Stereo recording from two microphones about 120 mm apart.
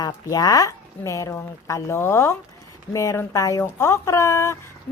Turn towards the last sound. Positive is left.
turn(degrees=25)  # may be behind; listen again after turning